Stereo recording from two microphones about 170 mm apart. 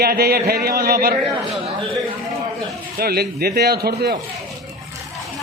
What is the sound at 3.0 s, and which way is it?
A man's voice, 65° right (ahead or behind).